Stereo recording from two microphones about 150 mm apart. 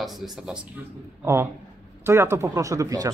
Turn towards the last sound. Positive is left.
turn(degrees=-20)  # may be behind; listen again after turning